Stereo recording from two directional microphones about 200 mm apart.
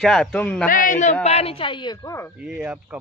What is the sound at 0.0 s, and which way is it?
Speech, centre (ahead or behind).